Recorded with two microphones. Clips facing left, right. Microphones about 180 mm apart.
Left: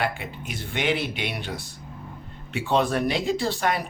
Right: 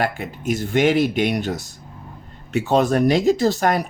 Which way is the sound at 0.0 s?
45° right (ahead or behind).